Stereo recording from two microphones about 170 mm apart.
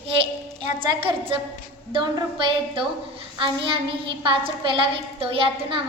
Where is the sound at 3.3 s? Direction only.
30° right (ahead or behind).